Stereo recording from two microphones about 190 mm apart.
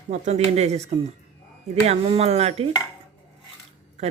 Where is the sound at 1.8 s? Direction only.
35° right (ahead or behind).